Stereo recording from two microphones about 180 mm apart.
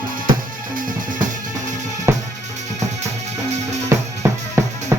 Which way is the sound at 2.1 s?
15° right (ahead or behind).